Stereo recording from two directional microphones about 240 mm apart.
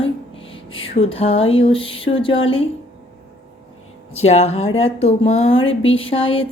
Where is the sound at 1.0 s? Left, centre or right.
Left.